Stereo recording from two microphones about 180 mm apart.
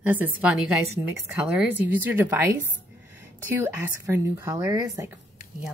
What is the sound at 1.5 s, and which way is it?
Speech, 10° right (ahead or behind).